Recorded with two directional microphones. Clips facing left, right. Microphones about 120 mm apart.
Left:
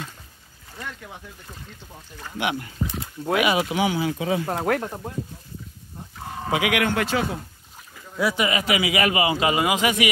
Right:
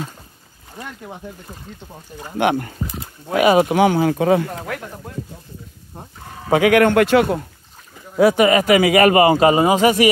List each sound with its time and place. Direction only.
0.8 s speech: 15° right (ahead or behind)
2.3 s a man's voice: 50° right (ahead or behind)
4.6 s speech: 45° left (ahead or behind)
6.5 s a man's voice: 45° right (ahead or behind); by 7.4 s 60° right (ahead or behind)
8.2 s a man's voice: 50° right (ahead or behind)